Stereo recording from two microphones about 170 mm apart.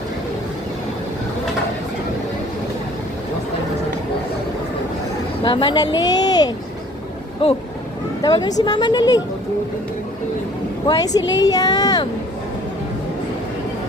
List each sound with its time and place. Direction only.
5.4 s a woman's voice: 30° left (ahead or behind)
6.1 s a sound: 25° left (ahead or behind)
8.2 s a woman's voice: 20° left (ahead or behind)
10.8 s a woman's voice: 20° left (ahead or behind)